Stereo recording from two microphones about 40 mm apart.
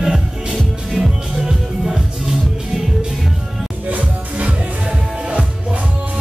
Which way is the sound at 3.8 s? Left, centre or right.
Right.